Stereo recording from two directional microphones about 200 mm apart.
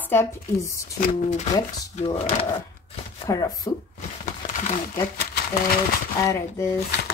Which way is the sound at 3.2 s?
15° left (ahead or behind).